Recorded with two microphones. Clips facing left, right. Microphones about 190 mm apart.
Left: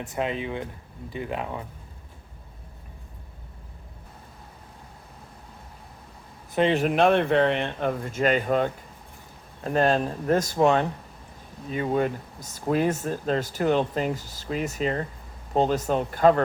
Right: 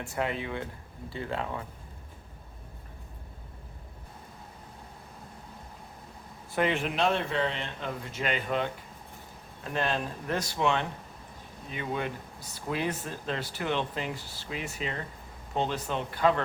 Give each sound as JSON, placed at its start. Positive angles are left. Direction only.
{"t": 0.0, "sound": "speech", "side_deg": 20}
{"t": 6.5, "sound": "speech", "side_deg": 25}
{"t": 6.7, "sound": "speech", "side_deg": 50}